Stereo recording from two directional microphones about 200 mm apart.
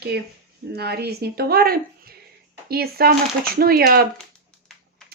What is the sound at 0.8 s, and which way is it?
Speech, 55° right (ahead or behind).